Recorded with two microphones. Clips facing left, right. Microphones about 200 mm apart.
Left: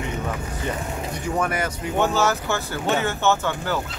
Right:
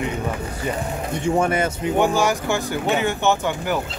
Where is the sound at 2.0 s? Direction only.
15° right (ahead or behind).